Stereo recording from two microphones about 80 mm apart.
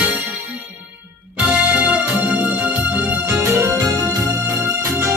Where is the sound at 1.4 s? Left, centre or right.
Centre.